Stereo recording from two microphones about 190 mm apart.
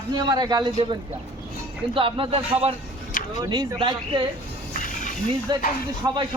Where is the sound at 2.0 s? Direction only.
30° right (ahead or behind).